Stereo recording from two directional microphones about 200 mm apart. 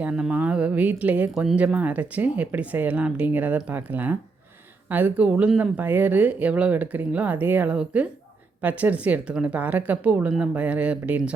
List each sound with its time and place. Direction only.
0.0 s speech: 5° right (ahead or behind)